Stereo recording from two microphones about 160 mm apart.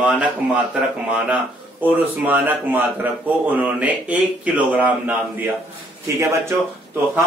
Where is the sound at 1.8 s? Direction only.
10° right (ahead or behind).